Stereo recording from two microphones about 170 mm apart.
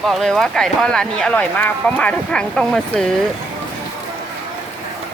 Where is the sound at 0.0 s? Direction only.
Centre (ahead or behind).